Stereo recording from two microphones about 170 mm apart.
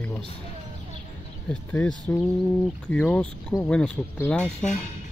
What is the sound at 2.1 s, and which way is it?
Speech, 15° left (ahead or behind).